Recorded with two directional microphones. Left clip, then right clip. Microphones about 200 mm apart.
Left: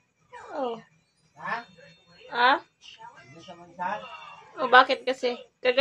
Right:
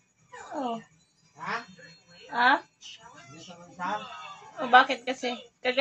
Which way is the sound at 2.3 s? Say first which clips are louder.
Left 1 dB; 40° left (ahead or behind).